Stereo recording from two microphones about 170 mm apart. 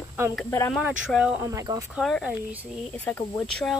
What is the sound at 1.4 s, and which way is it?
Speech, 20° right (ahead or behind).